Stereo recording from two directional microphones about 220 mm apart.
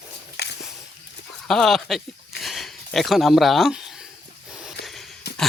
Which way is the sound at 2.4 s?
Centre (ahead or behind).